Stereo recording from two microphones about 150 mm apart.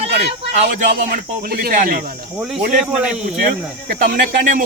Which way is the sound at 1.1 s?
90° right.